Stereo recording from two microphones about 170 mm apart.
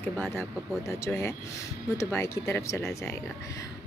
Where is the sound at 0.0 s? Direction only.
15° left (ahead or behind).